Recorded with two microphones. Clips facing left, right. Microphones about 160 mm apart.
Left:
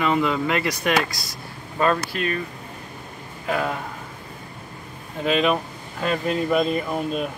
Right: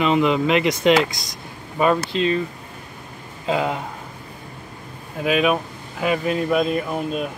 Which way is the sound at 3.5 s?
20° right (ahead or behind).